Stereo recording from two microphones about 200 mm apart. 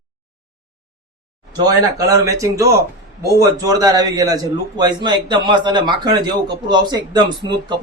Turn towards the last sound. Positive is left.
turn(degrees=-20)  # may be behind; listen again after turning